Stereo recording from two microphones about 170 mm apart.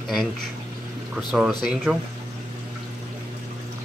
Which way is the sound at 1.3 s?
Centre (ahead or behind).